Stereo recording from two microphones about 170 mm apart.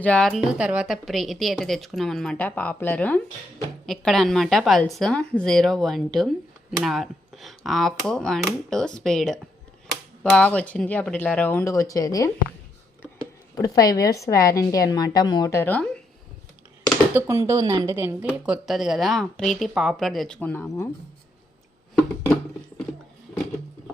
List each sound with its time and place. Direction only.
0.0 s a woman's voice: 5° left (ahead or behind)
13.6 s a woman's voice: 20° left (ahead or behind)
17.2 s a woman's voice: 15° right (ahead or behind); by 20.9 s 15° left (ahead or behind)